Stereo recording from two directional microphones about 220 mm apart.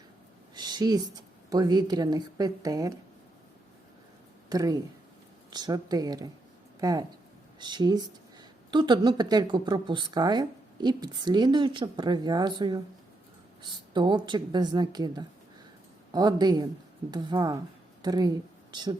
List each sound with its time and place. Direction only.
0.5 s a sound: 20° right (ahead or behind)
1.5 s a woman's voice: 15° right (ahead or behind)
4.4 s a woman's voice: 15° right (ahead or behind)